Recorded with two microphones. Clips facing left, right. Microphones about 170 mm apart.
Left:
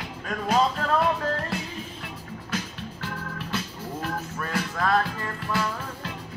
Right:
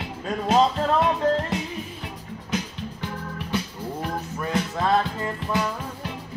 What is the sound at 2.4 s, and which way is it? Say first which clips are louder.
Music: right 4 dB; 15° right (ahead or behind).